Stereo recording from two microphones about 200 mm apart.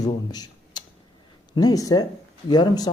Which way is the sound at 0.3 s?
20° left (ahead or behind).